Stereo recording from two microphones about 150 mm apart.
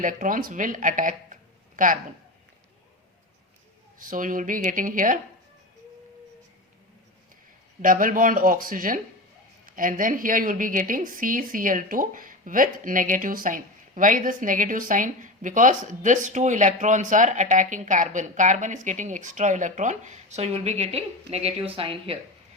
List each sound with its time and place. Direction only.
0.0 s speech: 60° right (ahead or behind)
3.9 s a woman's voice: 65° right (ahead or behind)
7.8 s a woman's voice: 65° right (ahead or behind); by 22.2 s 40° right (ahead or behind)